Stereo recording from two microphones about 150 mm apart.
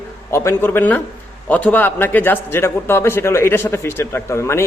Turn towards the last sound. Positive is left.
turn(degrees=15)  # may be behind; listen again after turning